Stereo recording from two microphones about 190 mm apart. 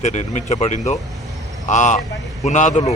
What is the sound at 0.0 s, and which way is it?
A man's voice, 35° left (ahead or behind).